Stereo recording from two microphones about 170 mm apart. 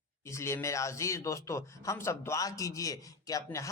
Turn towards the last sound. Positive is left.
turn(degrees=20)  # may be behind; listen again after turning